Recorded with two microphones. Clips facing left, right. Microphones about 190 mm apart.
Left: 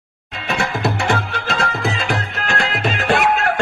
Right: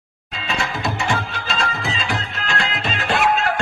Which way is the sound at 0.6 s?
65° left (ahead or behind).